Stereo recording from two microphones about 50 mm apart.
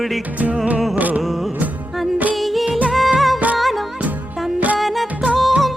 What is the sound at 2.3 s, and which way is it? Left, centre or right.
Music, centre.